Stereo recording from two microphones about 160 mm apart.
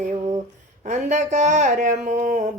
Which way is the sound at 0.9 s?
50° right (ahead or behind).